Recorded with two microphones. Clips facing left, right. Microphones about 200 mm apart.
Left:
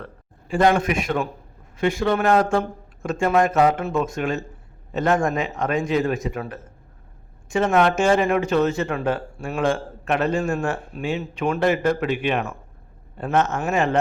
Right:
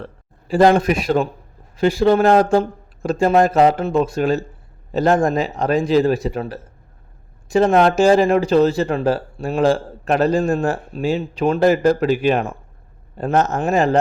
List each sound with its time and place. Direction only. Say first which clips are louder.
0.0 s a man's voice: right 4 dB; 35° right (ahead or behind)